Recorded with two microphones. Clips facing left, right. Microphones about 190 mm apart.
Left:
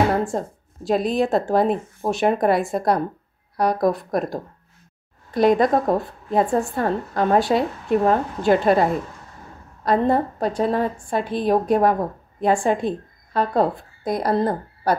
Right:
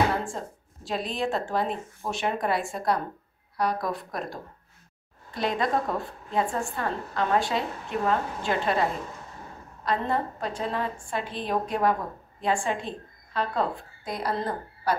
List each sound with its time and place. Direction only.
0.2 s a woman's voice: 40° left (ahead or behind)
9.8 s a woman's voice: 40° left (ahead or behind)